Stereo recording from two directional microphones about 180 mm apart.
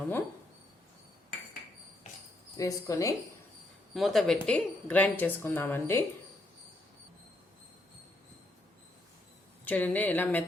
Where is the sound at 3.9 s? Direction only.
Centre (ahead or behind).